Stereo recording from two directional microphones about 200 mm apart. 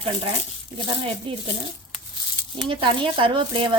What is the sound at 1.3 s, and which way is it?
Speech, 25° right (ahead or behind).